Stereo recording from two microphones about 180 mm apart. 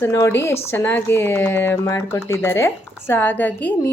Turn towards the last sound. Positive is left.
turn(degrees=10)  # may be behind; listen again after turning